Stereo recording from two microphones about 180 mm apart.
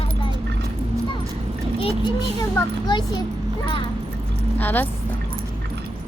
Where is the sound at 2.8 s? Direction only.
25° left (ahead or behind).